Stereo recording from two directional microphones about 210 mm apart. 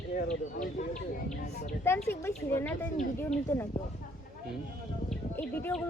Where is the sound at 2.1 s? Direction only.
10° left (ahead or behind).